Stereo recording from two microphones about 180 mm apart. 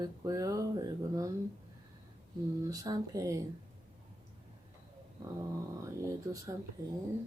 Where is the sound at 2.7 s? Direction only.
20° right (ahead or behind).